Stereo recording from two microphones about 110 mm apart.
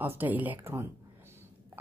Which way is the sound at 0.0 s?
20° right (ahead or behind).